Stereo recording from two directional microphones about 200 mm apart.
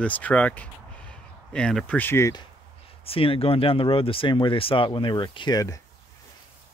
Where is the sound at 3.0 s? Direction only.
25° left (ahead or behind).